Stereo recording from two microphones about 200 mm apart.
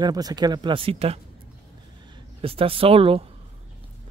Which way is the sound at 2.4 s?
30° right (ahead or behind).